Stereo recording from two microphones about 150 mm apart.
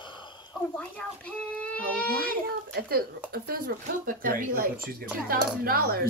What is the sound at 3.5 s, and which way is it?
Speech, 75° right (ahead or behind).